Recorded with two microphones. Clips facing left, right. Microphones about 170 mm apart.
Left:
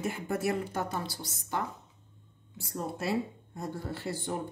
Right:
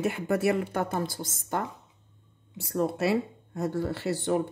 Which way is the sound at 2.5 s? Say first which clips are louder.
Right 8 dB; 70° right (ahead or behind).